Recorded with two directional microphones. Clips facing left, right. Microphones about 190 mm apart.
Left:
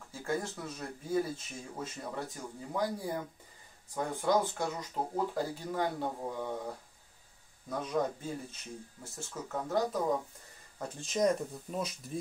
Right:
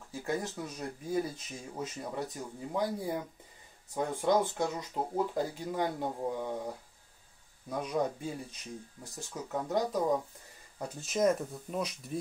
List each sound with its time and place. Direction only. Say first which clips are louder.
0.3 s speech: even; 20° right (ahead or behind)
7.7 s speech: right 1 dB; 10° right (ahead or behind)
11.0 s speech: right 1 dB; 5° right (ahead or behind)